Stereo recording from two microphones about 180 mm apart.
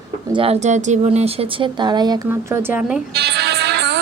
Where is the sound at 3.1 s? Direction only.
65° right (ahead or behind).